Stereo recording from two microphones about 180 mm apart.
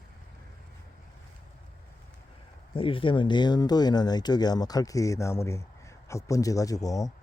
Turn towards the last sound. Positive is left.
turn(degrees=20)  # may be behind; listen again after turning